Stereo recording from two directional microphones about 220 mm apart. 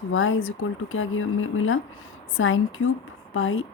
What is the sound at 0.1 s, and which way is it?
Speech, 65° left (ahead or behind).